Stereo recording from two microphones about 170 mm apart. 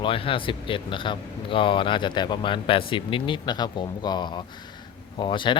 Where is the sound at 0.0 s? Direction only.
30° left (ahead or behind).